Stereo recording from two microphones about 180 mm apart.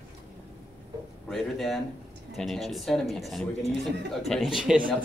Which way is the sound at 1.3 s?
Centre (ahead or behind).